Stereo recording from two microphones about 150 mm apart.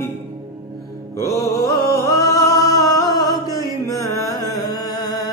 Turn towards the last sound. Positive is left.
turn(degrees=25)  # may be behind; listen again after turning